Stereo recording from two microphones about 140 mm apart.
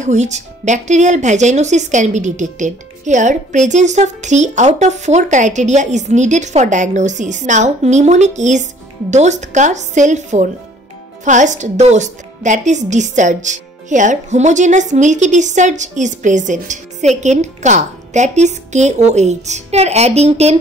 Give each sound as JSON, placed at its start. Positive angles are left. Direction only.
{"t": 0.0, "sound": "a woman's voice", "side_deg": -55}